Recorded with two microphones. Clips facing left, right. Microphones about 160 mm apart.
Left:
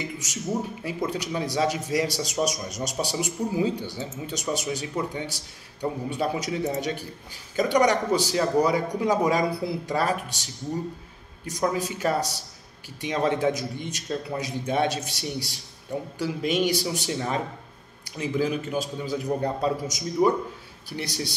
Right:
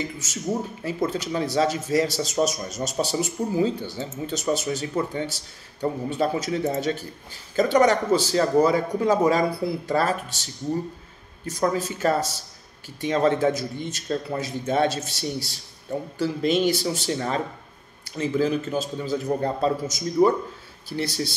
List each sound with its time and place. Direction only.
0.0 s speech: 15° left (ahead or behind)